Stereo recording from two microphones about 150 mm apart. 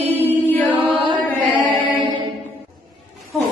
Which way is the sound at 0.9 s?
35° right (ahead or behind).